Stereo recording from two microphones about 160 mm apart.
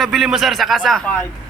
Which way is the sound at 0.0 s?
Centre (ahead or behind).